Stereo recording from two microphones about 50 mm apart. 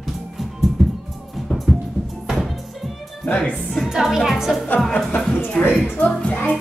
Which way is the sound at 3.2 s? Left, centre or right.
Left.